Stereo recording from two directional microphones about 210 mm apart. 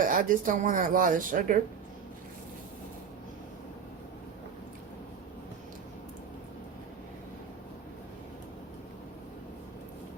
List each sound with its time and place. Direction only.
0.0 s speech: 40° right (ahead or behind)